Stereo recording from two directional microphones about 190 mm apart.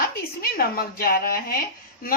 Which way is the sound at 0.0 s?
50° left (ahead or behind).